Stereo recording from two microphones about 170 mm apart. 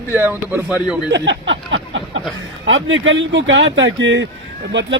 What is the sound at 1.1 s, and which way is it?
A man's voice, 90° right.